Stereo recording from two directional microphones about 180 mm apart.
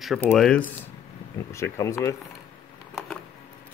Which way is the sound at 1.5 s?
15° left (ahead or behind).